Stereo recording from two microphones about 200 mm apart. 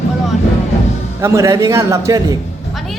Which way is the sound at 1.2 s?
15° right (ahead or behind).